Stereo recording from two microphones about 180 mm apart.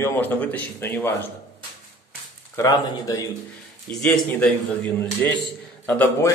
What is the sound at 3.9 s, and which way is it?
A man's voice, 5° left (ahead or behind).